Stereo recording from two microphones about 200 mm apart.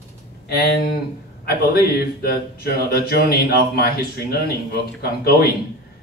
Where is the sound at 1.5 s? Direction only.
50° left (ahead or behind).